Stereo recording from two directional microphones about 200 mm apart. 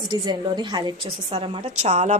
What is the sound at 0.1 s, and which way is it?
A woman's voice, 20° right (ahead or behind).